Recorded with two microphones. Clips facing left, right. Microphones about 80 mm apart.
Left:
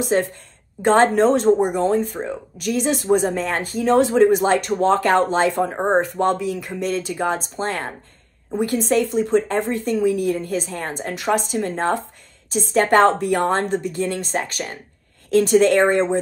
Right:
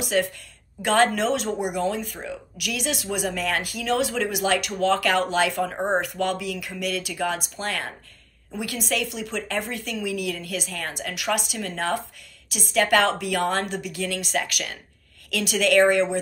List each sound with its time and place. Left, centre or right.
0.1 s speech: left